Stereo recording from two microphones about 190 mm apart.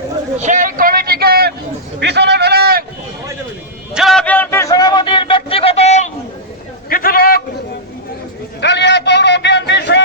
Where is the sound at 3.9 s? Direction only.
Centre (ahead or behind); by 6.1 s 35° left (ahead or behind).